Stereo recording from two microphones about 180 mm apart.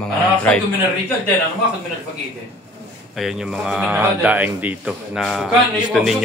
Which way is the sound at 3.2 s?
Centre (ahead or behind).